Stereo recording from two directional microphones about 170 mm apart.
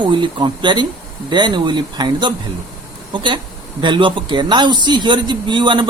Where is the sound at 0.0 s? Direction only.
30° right (ahead or behind).